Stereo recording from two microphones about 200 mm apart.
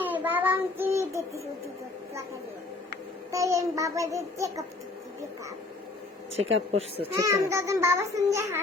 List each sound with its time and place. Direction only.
0.0 s child singing: 10° right (ahead or behind)
3.3 s a child's voice: 15° right (ahead or behind)
6.3 s speech: 30° right (ahead or behind)
7.2 s a child's voice: 15° right (ahead or behind)